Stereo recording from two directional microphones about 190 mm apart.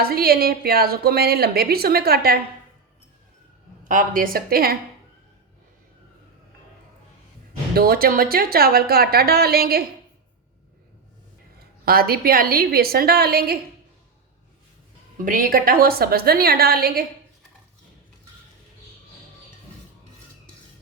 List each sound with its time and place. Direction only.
0.0 s a woman's voice: 55° right (ahead or behind)
3.8 s a woman's voice: 45° right (ahead or behind)
7.7 s a woman's voice: 50° right (ahead or behind)
11.9 s a woman's voice: 50° right (ahead or behind)
15.2 s a woman's voice: 45° right (ahead or behind)